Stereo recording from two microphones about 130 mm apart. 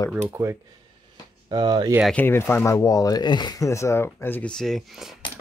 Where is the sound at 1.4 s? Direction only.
35° right (ahead or behind).